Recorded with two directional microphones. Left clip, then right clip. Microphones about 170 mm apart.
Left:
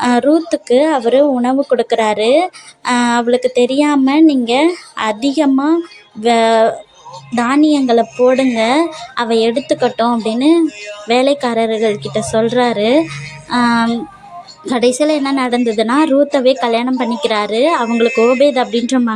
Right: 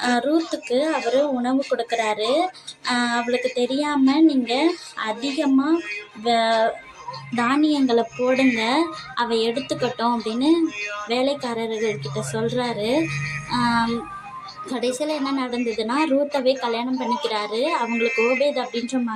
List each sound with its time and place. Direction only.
0.0 s speech: 50° left (ahead or behind)
8.4 s speech: 10° left (ahead or behind)
8.6 s speech: 45° left (ahead or behind)
17.8 s speech: 15° left (ahead or behind)
18.4 s speech: 50° left (ahead or behind)